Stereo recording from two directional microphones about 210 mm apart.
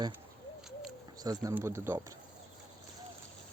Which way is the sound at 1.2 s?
20° right (ahead or behind).